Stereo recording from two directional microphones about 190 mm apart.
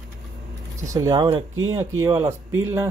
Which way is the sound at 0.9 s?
20° right (ahead or behind).